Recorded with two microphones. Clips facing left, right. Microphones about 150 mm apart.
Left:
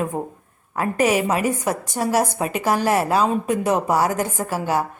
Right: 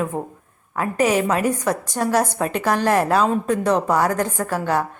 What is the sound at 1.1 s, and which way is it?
A woman's voice, 10° left (ahead or behind).